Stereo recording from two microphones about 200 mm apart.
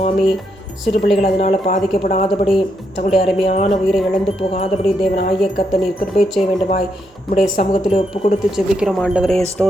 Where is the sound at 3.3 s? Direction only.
30° left (ahead or behind).